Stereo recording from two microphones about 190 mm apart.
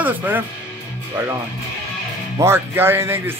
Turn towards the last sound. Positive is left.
turn(degrees=-10)  # may be behind; listen again after turning